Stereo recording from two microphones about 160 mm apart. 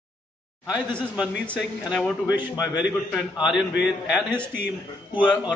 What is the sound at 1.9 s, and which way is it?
Speech, 5° left (ahead or behind).